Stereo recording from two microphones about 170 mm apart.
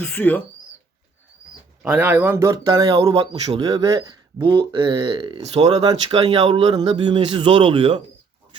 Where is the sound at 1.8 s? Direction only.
5° right (ahead or behind).